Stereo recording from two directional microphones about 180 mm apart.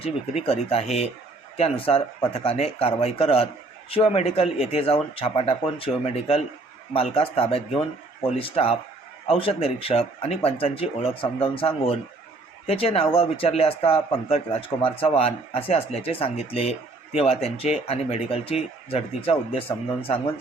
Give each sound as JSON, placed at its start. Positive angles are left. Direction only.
{"t": 0.0, "sound": "speech", "side_deg": 35}